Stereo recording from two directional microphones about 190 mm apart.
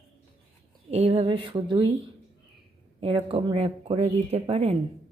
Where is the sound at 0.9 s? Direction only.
30° right (ahead or behind).